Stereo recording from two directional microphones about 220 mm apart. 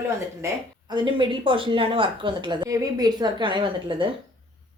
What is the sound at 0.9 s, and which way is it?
Speech, 20° right (ahead or behind).